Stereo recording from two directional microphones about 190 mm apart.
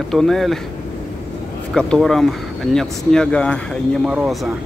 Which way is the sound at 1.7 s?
5° left (ahead or behind).